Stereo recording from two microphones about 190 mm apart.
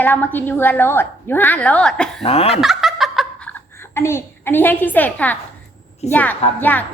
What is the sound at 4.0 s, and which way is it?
A woman's voice, 15° left (ahead or behind).